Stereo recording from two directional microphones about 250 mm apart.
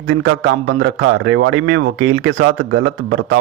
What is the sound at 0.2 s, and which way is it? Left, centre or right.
Speech, right.